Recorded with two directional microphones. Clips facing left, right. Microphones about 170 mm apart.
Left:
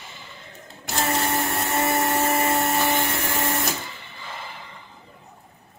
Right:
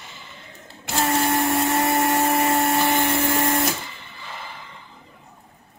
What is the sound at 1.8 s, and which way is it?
Vacuum cleaner, centre (ahead or behind).